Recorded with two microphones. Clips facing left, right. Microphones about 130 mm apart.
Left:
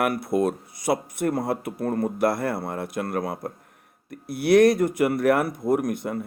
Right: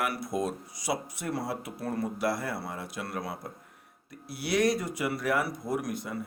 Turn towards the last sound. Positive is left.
turn(degrees=55)  # may be behind; listen again after turning